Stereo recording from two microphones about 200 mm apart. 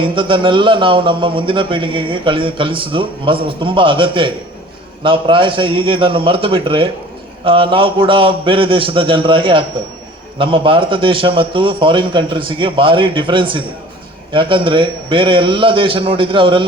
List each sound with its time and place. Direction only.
0.0 s a man's voice: 25° right (ahead or behind)